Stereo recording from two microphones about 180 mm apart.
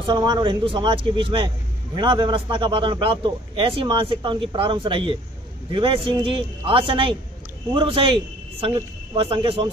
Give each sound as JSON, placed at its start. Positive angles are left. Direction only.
{"t": 0.0, "sound": "a man's voice", "side_deg": -25}